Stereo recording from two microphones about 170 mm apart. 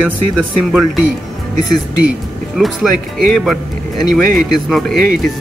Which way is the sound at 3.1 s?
Centre (ahead or behind).